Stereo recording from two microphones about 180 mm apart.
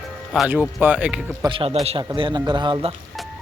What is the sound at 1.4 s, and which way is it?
A man's voice, 30° right (ahead or behind).